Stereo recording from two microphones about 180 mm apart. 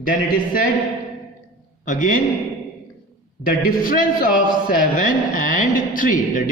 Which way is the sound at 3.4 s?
50° left (ahead or behind).